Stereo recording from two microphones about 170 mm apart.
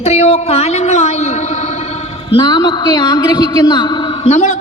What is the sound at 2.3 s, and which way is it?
A man's voice, 25° left (ahead or behind).